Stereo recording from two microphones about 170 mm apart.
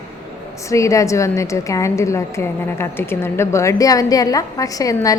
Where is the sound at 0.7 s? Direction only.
20° left (ahead or behind).